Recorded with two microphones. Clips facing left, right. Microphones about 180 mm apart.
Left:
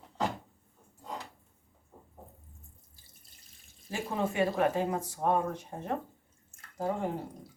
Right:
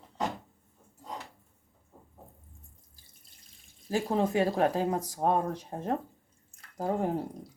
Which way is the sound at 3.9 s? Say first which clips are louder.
Right 4 dB; 35° right (ahead or behind).